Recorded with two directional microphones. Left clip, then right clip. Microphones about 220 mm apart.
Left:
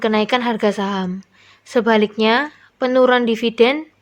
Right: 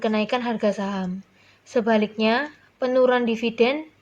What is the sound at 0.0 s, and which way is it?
A woman's voice, 50° left (ahead or behind).